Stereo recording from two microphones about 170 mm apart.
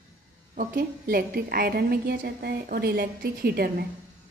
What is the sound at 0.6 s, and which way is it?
A woman's voice, 55° right (ahead or behind).